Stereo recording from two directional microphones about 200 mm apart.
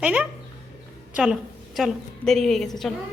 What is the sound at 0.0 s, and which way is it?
A woman's voice, 5° right (ahead or behind).